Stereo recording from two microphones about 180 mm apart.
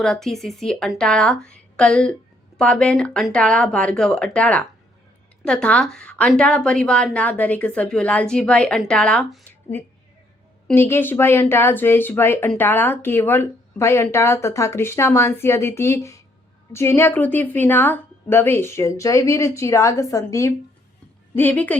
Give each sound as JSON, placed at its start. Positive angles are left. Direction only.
{"t": 0.0, "sound": "a woman's voice", "side_deg": 0}
{"t": 10.7, "sound": "speech", "side_deg": 15}